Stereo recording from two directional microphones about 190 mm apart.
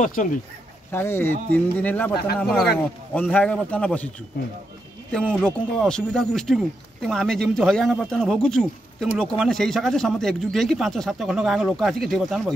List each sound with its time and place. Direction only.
0.0 s speech: 40° left (ahead or behind)
0.9 s speech: 10° left (ahead or behind)
5.1 s speech: 5° left (ahead or behind)